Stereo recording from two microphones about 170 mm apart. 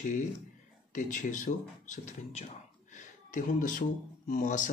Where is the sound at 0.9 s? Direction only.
50° left (ahead or behind).